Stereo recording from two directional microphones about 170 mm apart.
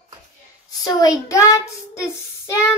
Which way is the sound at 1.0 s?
20° left (ahead or behind).